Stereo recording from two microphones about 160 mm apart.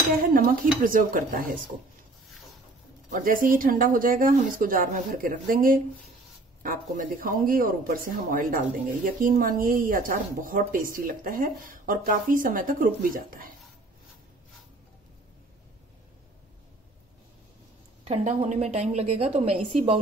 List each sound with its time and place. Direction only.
0.2 s speech: 65° right (ahead or behind)
3.1 s speech: 60° right (ahead or behind)
18.0 s a woman's voice: 45° right (ahead or behind)